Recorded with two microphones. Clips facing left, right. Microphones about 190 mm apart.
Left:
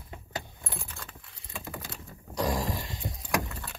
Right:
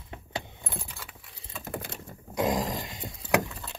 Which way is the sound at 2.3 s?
20° right (ahead or behind).